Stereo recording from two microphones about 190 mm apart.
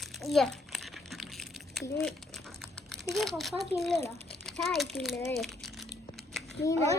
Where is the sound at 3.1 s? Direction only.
Centre (ahead or behind).